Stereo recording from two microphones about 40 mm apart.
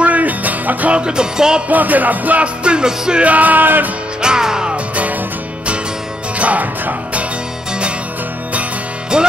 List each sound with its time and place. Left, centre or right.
0.0 s music: right
0.9 s music: right
1.7 s music: right
2.4 s music: right
3.3 s music: right
4.2 s music: centre
6.3 s music: right
9.1 s music: right